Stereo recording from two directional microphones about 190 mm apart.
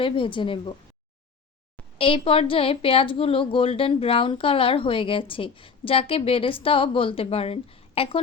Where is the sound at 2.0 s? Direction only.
30° left (ahead or behind).